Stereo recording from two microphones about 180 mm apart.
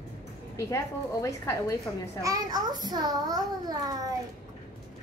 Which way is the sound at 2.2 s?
20° right (ahead or behind).